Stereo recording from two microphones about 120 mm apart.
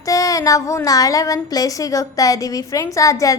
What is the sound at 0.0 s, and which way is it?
A woman's voice, 30° left (ahead or behind).